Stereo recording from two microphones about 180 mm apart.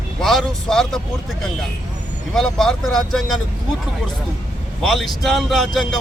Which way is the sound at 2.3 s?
5° left (ahead or behind).